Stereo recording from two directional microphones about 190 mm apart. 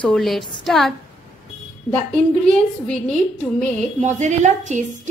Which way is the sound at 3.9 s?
40° right (ahead or behind).